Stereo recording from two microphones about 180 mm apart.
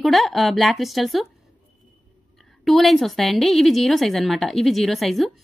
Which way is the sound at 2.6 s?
Centre (ahead or behind).